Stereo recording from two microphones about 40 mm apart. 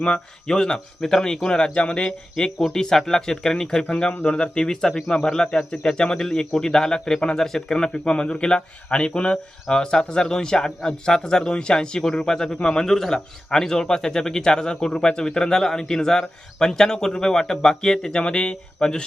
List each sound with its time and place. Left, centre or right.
0.0 s a man's voice: centre
3.8 s a man's voice: left